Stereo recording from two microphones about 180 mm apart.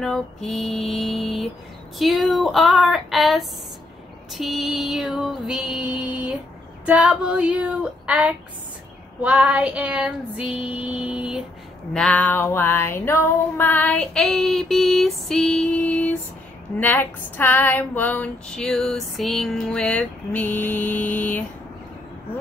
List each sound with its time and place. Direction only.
0.0 s music: centre (ahead or behind)
6.9 s female singing: 5° right (ahead or behind)
11.9 s female singing: 5° left (ahead or behind)